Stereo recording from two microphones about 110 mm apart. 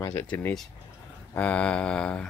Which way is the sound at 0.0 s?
20° left (ahead or behind).